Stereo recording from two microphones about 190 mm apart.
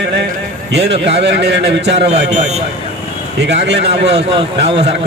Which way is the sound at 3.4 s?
65° right (ahead or behind).